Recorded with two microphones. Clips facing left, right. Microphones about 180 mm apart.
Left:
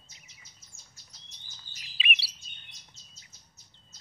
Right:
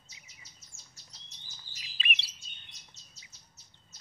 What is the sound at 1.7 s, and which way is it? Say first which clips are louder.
Chirp: even; 20° left (ahead or behind).